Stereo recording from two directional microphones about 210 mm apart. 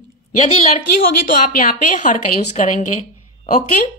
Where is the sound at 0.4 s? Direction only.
30° left (ahead or behind).